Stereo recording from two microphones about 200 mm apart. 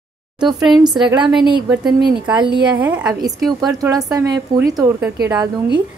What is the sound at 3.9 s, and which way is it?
A woman's voice, 20° right (ahead or behind).